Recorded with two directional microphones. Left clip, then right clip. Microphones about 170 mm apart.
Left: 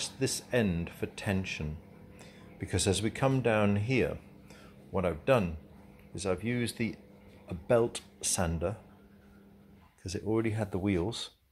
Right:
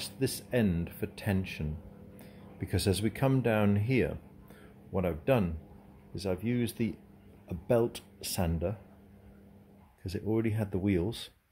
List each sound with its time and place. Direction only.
0.0 s speech: 15° right (ahead or behind)
10.1 s speech: 20° right (ahead or behind)